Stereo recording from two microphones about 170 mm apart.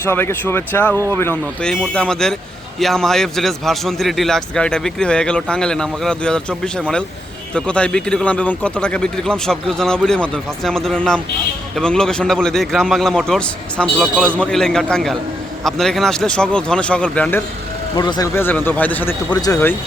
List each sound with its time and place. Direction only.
0.1 s a man's voice: 15° left (ahead or behind)
17.9 s speech: 25° left (ahead or behind)
18.3 s speech: 10° left (ahead or behind)
19.3 s speech: 20° left (ahead or behind)